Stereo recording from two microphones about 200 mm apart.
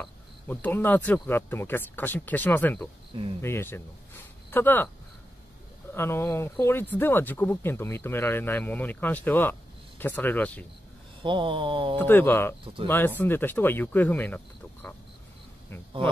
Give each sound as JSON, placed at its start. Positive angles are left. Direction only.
{"t": 0.0, "sound": "speech", "side_deg": 10}
{"t": 5.9, "sound": "speech", "side_deg": 10}
{"t": 11.2, "sound": "a sound", "side_deg": -25}
{"t": 12.0, "sound": "speech", "side_deg": 10}